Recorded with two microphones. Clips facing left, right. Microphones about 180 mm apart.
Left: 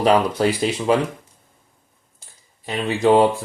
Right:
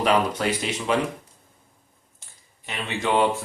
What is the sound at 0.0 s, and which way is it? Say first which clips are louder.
Speech: left 5 dB; 35° left (ahead or behind).